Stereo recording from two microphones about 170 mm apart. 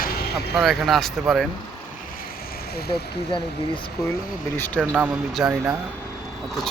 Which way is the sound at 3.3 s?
30° left (ahead or behind).